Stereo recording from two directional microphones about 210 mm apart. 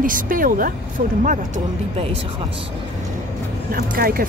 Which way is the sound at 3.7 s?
45° right (ahead or behind).